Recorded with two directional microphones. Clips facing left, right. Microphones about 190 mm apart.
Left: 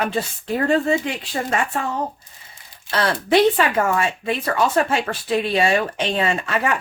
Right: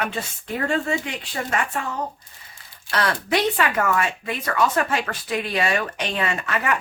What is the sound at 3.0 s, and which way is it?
Speech, 30° left (ahead or behind).